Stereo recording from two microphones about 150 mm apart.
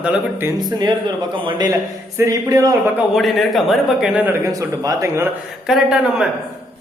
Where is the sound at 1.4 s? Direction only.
30° right (ahead or behind).